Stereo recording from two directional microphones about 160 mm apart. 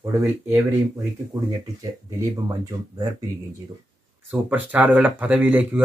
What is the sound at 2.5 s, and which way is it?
Speech, 25° right (ahead or behind).